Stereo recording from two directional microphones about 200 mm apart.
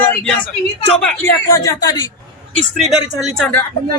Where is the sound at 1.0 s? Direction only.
10° left (ahead or behind).